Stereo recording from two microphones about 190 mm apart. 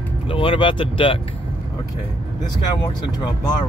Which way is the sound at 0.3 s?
30° left (ahead or behind).